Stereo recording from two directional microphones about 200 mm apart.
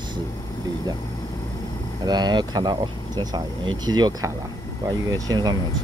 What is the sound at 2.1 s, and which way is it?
Speech, 20° right (ahead or behind).